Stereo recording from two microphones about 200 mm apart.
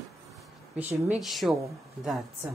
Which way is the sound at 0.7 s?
10° right (ahead or behind).